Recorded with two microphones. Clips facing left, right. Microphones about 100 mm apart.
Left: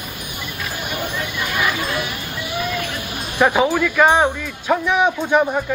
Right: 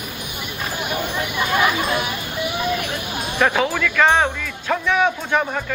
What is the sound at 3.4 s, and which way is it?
Speech, 15° left (ahead or behind).